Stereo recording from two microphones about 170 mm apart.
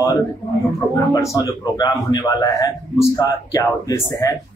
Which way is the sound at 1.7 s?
25° left (ahead or behind).